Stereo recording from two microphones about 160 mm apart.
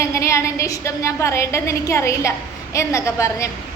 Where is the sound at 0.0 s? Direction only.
20° left (ahead or behind).